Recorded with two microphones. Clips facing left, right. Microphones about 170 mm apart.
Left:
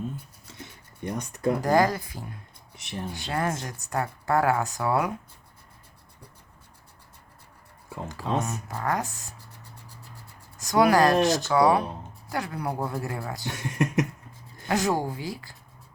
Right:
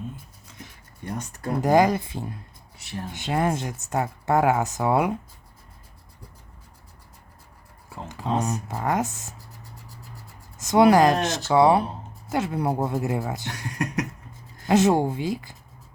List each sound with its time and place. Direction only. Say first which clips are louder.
1.6 s speech: right 5 dB; 20° right (ahead or behind)
2.7 s speech: right 1 dB; 20° left (ahead or behind)
3.1 s speech: right 5 dB; 20° right (ahead or behind)
8.0 s speech: right 2 dB; 20° right (ahead or behind)
10.6 s speech: right 4 dB; 25° right (ahead or behind)
13.5 s speech: left 2 dB; 20° left (ahead or behind)
14.7 s speech: right 6 dB; 20° right (ahead or behind)